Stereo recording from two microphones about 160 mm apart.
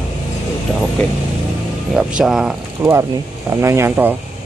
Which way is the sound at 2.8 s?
20° right (ahead or behind).